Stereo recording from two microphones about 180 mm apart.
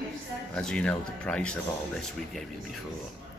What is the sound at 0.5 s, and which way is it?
A man's voice, 5° left (ahead or behind).